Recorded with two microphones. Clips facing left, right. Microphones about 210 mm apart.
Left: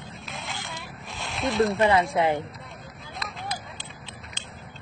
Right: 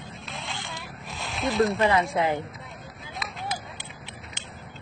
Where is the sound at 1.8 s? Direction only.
25° left (ahead or behind).